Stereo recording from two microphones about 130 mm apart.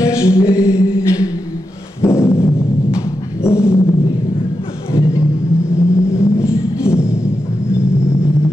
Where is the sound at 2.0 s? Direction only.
20° left (ahead or behind).